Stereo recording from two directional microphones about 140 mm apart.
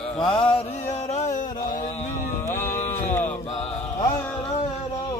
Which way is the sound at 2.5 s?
55° left (ahead or behind).